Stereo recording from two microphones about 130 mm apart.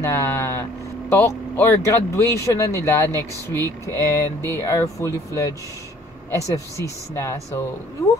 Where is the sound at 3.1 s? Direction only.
25° right (ahead or behind).